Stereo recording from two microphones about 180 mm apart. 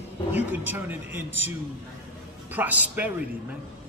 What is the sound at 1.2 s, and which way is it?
Speech, 90° right.